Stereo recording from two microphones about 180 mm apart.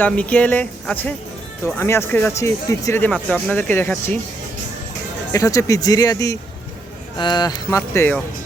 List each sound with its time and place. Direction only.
0.0 s speech: 10° left (ahead or behind)
5.3 s speech: 20° left (ahead or behind)
7.8 s speech: 10° left (ahead or behind)